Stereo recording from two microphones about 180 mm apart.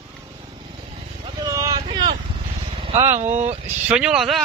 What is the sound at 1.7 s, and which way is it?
Vehicle, 25° right (ahead or behind).